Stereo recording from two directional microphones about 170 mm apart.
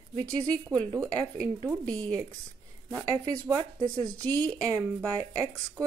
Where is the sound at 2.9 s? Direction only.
20° right (ahead or behind).